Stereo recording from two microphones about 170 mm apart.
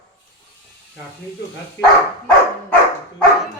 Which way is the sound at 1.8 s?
85° left.